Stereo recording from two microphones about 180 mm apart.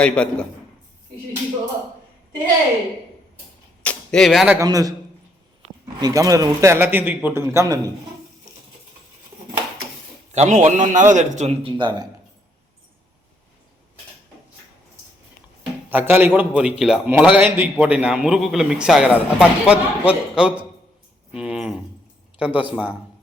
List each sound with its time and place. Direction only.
0.0 s a man's voice: 5° left (ahead or behind)
3.8 s a sound: 5° left (ahead or behind)
4.5 s a man's voice: 20° right (ahead or behind)
6.0 s a man's voice: 20° right (ahead or behind)
10.3 s a man's voice: 40° right (ahead or behind)
15.9 s a man's voice: 10° right (ahead or behind)
21.3 s a sound: 5° right (ahead or behind)
22.4 s a man's voice: 10° right (ahead or behind)